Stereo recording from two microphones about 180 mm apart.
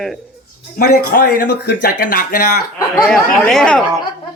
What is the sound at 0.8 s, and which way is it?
Speech, 50° left (ahead or behind).